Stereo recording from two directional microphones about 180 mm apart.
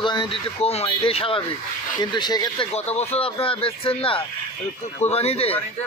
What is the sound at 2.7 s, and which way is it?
Speech, 35° left (ahead or behind).